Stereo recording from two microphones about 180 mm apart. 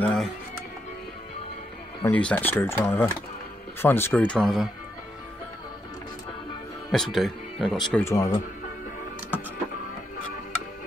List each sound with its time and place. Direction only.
0.0 s music: 5° left (ahead or behind)
2.0 s speech: 10° left (ahead or behind)
6.9 s speech: centre (ahead or behind)
7.9 s speech: 15° left (ahead or behind)